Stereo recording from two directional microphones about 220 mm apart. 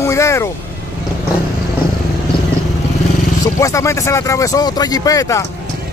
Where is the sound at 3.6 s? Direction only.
15° left (ahead or behind).